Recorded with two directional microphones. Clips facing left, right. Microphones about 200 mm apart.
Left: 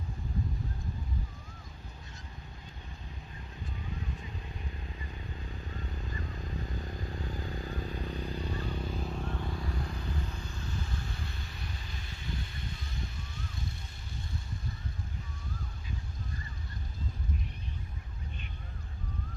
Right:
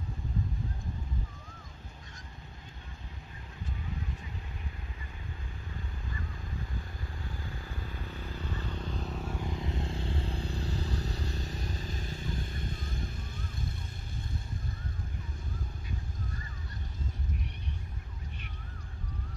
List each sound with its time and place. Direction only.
7.1 s vehicle: 20° left (ahead or behind)
9.1 s vehicle: 10° right (ahead or behind); by 12.9 s 50° right (ahead or behind)